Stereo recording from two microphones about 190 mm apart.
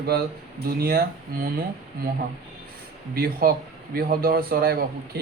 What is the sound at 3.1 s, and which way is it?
Speech, 50° right (ahead or behind).